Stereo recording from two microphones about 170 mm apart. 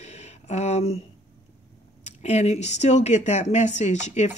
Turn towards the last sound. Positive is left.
turn(degrees=45)  # may be behind; listen again after turning